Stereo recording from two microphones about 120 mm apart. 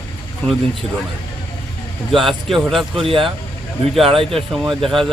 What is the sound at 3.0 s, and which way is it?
Speech, 50° right (ahead or behind).